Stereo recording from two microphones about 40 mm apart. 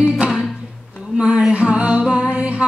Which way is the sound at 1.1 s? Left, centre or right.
Right.